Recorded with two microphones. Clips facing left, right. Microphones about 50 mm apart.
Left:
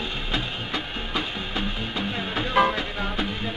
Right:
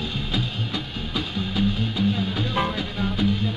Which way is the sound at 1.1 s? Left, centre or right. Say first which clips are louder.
Right 3 dB; left.